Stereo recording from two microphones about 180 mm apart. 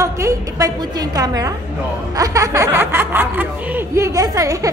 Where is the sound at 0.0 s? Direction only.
15° right (ahead or behind).